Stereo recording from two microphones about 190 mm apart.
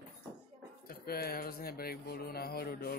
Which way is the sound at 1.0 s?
55° left (ahead or behind).